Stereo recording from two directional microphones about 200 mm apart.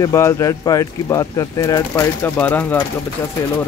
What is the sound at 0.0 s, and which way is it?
Speech, 15° left (ahead or behind).